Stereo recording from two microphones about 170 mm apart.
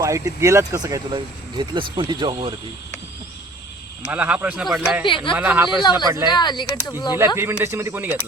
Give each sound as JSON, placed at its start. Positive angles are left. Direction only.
{"t": 0.0, "sound": "speech", "side_deg": -20}
{"t": 4.0, "sound": "speech", "side_deg": -10}
{"t": 5.0, "sound": "speech", "side_deg": 30}
{"t": 5.3, "sound": "speech", "side_deg": -10}
{"t": 5.7, "sound": "speech", "side_deg": 25}
{"t": 7.3, "sound": "speech", "side_deg": -15}